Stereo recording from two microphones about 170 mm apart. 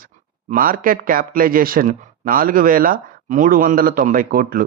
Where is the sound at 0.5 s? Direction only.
55° right (ahead or behind).